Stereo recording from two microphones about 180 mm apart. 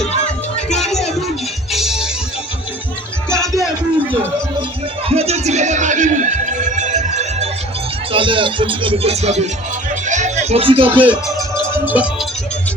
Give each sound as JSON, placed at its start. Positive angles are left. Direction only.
{"t": 1.7, "sound": "music", "side_deg": 0}
{"t": 5.0, "sound": "music", "side_deg": -35}
{"t": 8.1, "sound": "music", "side_deg": -30}
{"t": 11.7, "sound": "music", "side_deg": -10}